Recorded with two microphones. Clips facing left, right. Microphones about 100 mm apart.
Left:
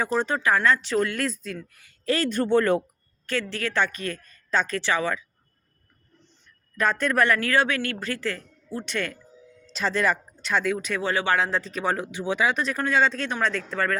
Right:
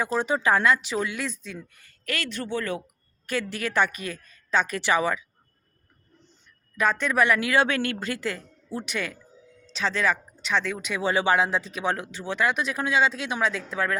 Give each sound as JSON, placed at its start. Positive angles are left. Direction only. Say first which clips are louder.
{"t": 0.0, "sound": "speech", "louder": "left 1 dB", "side_deg": -5}
{"t": 0.3, "sound": "speech", "louder": "right 1 dB", "side_deg": -20}
{"t": 2.0, "sound": "speech", "louder": "left 8 dB", "side_deg": 35}
{"t": 3.2, "sound": "speech", "louder": "left 1 dB", "side_deg": -15}
{"t": 6.7, "sound": "speech", "louder": "even", "side_deg": 0}
{"t": 11.0, "sound": "speech", "louder": "right 3 dB", "side_deg": -15}
{"t": 11.6, "sound": "speech", "louder": "left 1 dB", "side_deg": -5}
{"t": 12.1, "sound": "speech", "louder": "left 4 dB", "side_deg": 15}
{"t": 12.4, "sound": "speech", "louder": "right 1 dB", "side_deg": -5}